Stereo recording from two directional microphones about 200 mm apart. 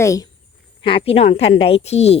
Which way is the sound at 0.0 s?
15° left (ahead or behind).